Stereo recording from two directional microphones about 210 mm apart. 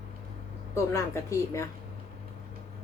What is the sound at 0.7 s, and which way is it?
Speech, 15° left (ahead or behind).